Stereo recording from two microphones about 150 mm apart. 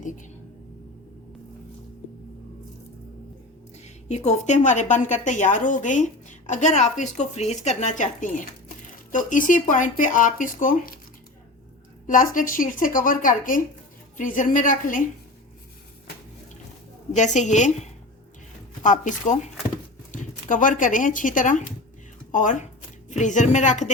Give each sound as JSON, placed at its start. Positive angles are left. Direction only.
{"t": 0.0, "sound": "music", "side_deg": 60}
{"t": 4.1, "sound": "a woman's voice", "side_deg": 50}
{"t": 12.0, "sound": "a woman's voice", "side_deg": 60}
{"t": 17.1, "sound": "a woman's voice", "side_deg": 55}